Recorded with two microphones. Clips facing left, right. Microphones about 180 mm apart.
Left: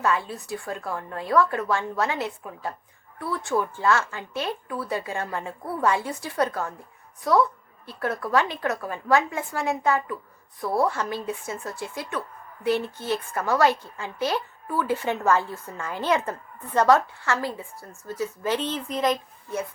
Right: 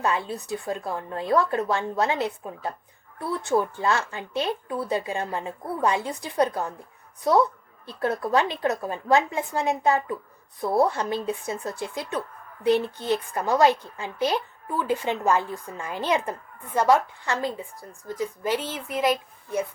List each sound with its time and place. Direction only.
0.0 s a woman's voice: 20° right (ahead or behind)